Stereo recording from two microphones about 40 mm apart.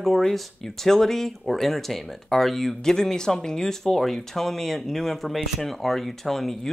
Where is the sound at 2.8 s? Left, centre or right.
Centre.